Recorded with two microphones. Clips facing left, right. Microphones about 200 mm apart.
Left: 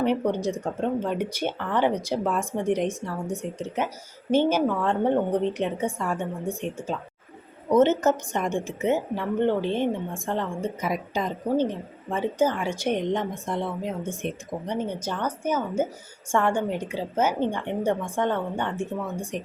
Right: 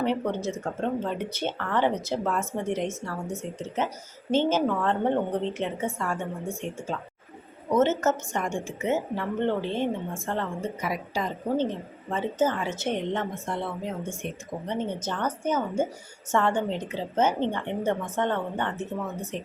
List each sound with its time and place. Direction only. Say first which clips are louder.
0.0 s a woman's voice: left 3 dB; 15° left (ahead or behind)
7.8 s a woman's voice: left 3 dB; 15° left (ahead or behind)